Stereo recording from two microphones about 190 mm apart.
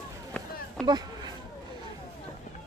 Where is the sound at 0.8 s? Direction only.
20° right (ahead or behind).